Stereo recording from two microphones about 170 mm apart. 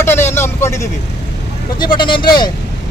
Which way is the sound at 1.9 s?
30° left (ahead or behind).